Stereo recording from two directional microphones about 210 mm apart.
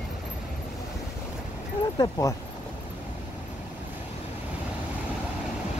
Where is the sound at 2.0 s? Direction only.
15° left (ahead or behind).